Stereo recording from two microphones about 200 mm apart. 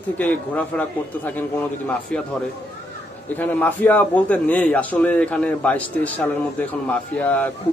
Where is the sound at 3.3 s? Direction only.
10° left (ahead or behind).